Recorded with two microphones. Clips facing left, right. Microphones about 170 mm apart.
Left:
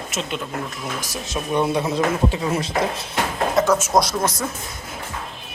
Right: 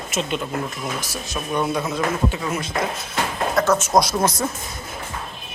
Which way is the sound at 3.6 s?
10° left (ahead or behind).